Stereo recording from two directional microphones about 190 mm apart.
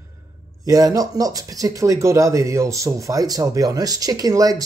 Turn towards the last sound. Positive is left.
turn(degrees=-20)  # may be behind; listen again after turning